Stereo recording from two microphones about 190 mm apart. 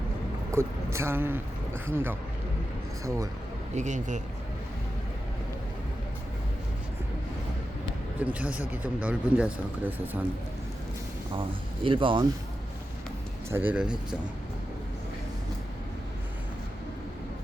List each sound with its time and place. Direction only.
0.5 s speech: 15° right (ahead or behind)
3.8 s a man's voice: 40° right (ahead or behind)
8.2 s speech: 5° right (ahead or behind)
11.3 s speech: 25° right (ahead or behind)
13.5 s speech: 10° right (ahead or behind)